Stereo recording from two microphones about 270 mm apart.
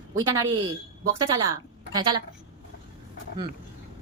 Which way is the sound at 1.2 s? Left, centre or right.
Centre.